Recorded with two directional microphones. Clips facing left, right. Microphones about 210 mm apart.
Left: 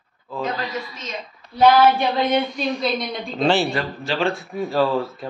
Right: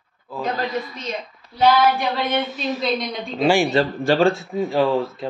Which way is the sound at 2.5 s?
5° right (ahead or behind).